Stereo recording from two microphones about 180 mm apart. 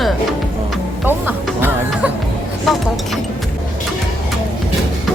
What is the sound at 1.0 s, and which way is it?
Music, 10° right (ahead or behind).